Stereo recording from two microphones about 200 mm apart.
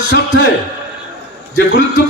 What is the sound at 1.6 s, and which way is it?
Speech, 65° left (ahead or behind).